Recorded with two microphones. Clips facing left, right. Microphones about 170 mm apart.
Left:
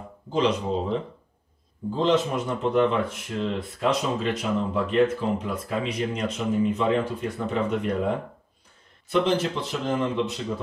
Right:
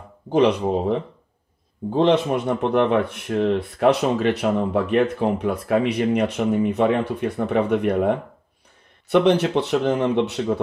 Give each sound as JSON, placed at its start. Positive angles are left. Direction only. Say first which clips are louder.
{"t": 0.3, "sound": "speech", "louder": "right 6 dB", "side_deg": -65}